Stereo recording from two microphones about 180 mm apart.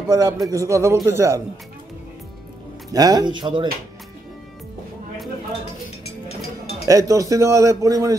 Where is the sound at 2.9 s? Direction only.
20° right (ahead or behind).